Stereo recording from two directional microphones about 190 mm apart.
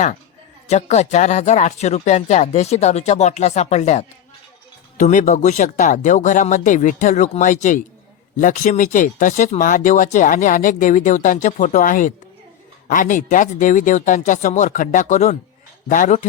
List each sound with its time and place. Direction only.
0.7 s speech: 35° left (ahead or behind)